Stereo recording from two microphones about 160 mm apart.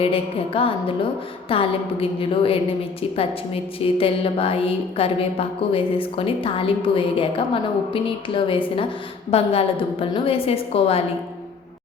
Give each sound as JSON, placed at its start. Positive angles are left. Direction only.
{"t": 0.0, "sound": "a woman's voice", "side_deg": 35}